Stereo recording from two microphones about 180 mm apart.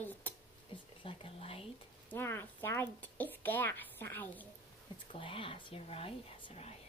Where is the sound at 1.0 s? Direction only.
30° left (ahead or behind).